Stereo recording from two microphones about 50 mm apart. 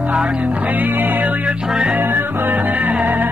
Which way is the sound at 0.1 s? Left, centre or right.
Right.